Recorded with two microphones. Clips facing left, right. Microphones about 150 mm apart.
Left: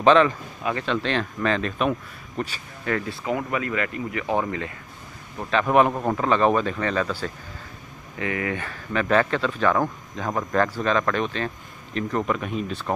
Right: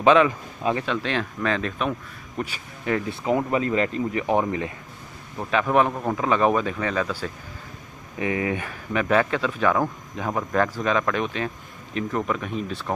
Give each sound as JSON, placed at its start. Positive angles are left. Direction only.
{"t": 0.0, "sound": "speech", "side_deg": -10}
{"t": 2.3, "sound": "speech", "side_deg": -10}
{"t": 3.3, "sound": "speech", "side_deg": -30}
{"t": 5.7, "sound": "a man's voice", "side_deg": 5}
{"t": 6.1, "sound": "speech", "side_deg": -10}
{"t": 8.2, "sound": "speech", "side_deg": -20}